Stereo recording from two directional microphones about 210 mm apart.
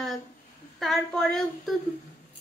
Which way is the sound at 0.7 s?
Centre (ahead or behind).